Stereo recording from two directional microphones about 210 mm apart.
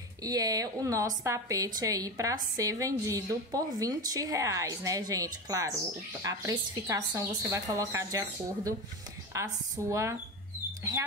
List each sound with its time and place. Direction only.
0.2 s a woman's voice: 15° right (ahead or behind)
9.3 s a woman's voice: 15° right (ahead or behind)